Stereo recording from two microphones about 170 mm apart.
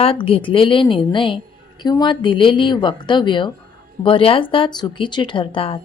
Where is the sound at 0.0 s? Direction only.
35° left (ahead or behind).